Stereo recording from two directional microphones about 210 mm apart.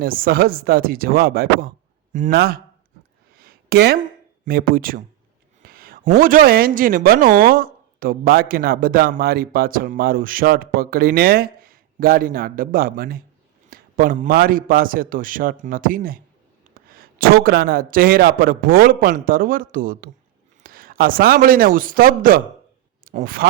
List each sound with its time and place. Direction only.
0.0 s speech: 45° right (ahead or behind)
3.3 s a sound: 45° right (ahead or behind)
4.4 s a man's voice: 45° right (ahead or behind)